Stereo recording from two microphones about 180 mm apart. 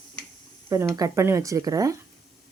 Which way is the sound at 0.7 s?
15° right (ahead or behind).